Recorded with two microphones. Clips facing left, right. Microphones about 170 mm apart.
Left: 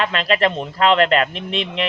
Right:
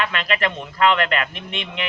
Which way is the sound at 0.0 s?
30° left (ahead or behind).